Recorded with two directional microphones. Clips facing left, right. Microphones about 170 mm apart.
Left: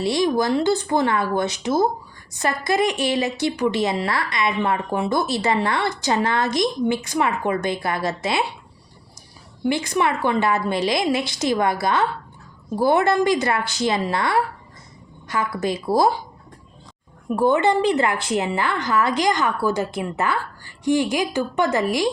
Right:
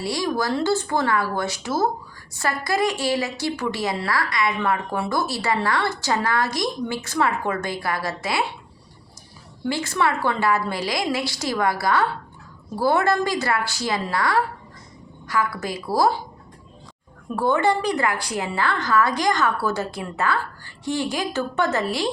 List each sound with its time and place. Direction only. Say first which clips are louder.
0.0 s a woman's voice: left 5 dB; 20° left (ahead or behind)
9.6 s a woman's voice: left 2 dB; 20° left (ahead or behind)
17.2 s a woman's voice: left 2 dB; 15° left (ahead or behind)